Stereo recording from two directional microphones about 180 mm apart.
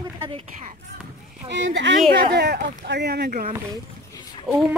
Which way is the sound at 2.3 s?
65° right (ahead or behind).